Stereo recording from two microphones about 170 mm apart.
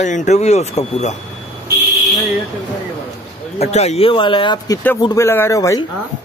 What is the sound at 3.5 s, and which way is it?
Speech, 40° left (ahead or behind).